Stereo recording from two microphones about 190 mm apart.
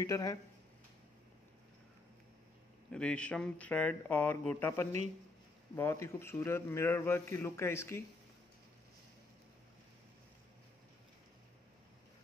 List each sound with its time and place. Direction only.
0.0 s a man's voice: 15° left (ahead or behind)
2.9 s a man's voice: 5° left (ahead or behind)